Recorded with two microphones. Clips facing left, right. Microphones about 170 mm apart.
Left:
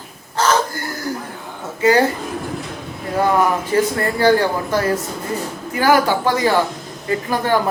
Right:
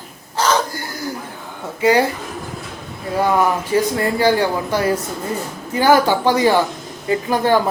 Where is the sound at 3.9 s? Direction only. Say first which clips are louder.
Left 1 dB; 15° right (ahead or behind).